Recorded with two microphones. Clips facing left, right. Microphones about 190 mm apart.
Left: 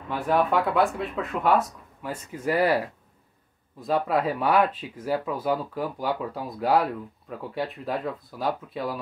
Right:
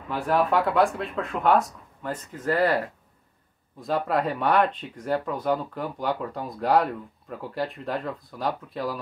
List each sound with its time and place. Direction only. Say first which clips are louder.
0.1 s speech: even; centre (ahead or behind)
3.8 s speech: left 1 dB; centre (ahead or behind)